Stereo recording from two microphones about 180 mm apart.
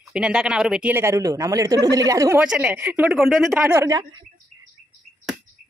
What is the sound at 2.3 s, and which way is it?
Speech, 10° right (ahead or behind).